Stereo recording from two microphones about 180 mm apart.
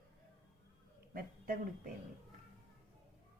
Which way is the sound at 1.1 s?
55° right (ahead or behind).